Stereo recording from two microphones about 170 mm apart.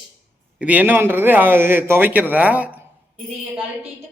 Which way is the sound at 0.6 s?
10° right (ahead or behind).